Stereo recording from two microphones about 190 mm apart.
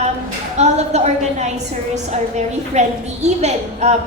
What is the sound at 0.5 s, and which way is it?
A woman's voice, 35° right (ahead or behind).